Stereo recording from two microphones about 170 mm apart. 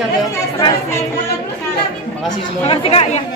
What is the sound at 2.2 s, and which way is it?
Speech, 30° left (ahead or behind).